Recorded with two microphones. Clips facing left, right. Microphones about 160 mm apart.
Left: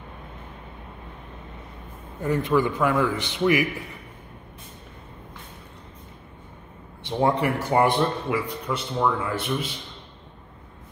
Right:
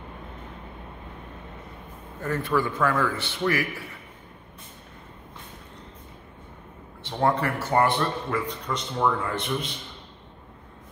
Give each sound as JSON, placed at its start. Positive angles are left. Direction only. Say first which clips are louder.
{"t": 2.2, "sound": "speech", "louder": "left 4 dB", "side_deg": 15}
{"t": 7.0, "sound": "speech", "louder": "left 2 dB", "side_deg": 15}